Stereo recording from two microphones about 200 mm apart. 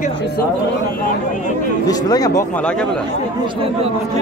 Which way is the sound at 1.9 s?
20° left (ahead or behind).